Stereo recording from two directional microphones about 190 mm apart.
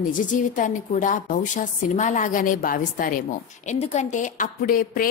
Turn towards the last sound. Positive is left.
turn(degrees=50)  # may be behind; listen again after turning